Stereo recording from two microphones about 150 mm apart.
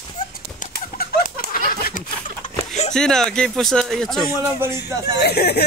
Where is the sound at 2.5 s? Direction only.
45° left (ahead or behind).